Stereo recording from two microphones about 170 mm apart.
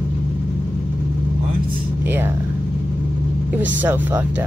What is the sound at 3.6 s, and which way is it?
Speech, 10° right (ahead or behind).